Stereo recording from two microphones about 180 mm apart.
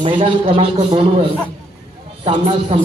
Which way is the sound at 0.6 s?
30° right (ahead or behind).